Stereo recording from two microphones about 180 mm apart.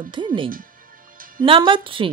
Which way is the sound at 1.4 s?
30° right (ahead or behind).